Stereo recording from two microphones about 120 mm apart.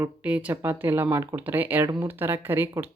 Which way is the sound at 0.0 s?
10° right (ahead or behind).